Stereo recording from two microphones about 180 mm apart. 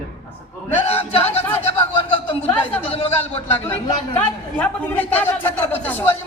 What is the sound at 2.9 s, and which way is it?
Speech, 35° left (ahead or behind).